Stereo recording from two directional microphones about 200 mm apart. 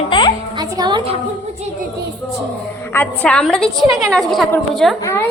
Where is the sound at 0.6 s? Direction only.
20° right (ahead or behind).